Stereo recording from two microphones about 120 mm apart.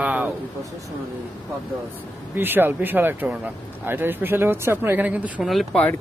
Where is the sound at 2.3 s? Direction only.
15° right (ahead or behind).